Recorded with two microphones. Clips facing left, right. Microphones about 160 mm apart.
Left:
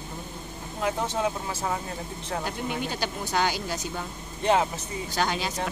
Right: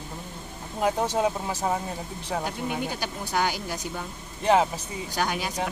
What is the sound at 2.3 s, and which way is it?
Speech, 15° right (ahead or behind).